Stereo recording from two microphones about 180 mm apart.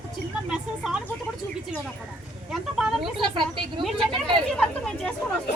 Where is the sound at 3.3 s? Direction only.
25° right (ahead or behind).